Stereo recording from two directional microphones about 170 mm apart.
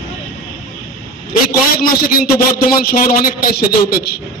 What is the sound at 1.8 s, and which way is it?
A man's voice, 60° left (ahead or behind).